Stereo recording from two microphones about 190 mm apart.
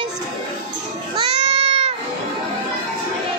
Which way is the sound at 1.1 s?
30° right (ahead or behind).